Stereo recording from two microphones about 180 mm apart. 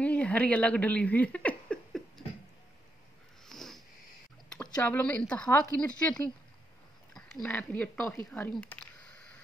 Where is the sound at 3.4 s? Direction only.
Centre (ahead or behind).